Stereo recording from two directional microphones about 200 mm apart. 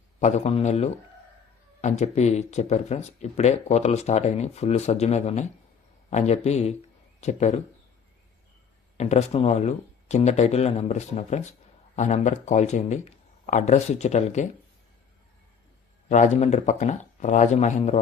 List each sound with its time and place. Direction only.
0.2 s speech: 35° left (ahead or behind)
9.0 s speech: 35° left (ahead or behind)
16.0 s speech: 40° left (ahead or behind)